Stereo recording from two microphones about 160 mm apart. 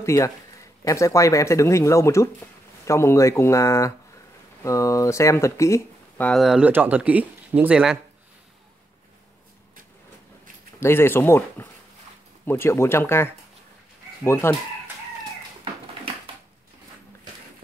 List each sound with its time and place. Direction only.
0.0 s speech: 20° left (ahead or behind); by 8.0 s 5° right (ahead or behind)
10.8 s speech: 15° left (ahead or behind)